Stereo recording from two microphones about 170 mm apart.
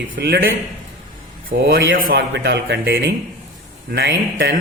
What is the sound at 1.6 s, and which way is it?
Speech, 60° right (ahead or behind).